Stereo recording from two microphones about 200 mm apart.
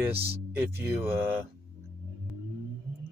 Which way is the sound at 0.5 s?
10° right (ahead or behind).